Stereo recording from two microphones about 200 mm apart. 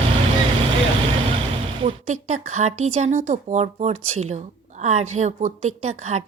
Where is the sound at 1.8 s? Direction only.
35° right (ahead or behind).